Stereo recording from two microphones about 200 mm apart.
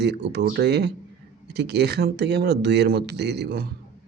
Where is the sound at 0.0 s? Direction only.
55° right (ahead or behind).